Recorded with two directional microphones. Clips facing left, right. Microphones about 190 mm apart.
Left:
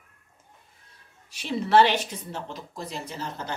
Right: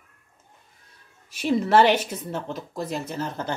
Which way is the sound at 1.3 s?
50° right (ahead or behind).